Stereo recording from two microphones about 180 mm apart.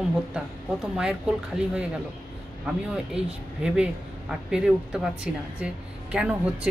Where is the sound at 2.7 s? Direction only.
5° right (ahead or behind).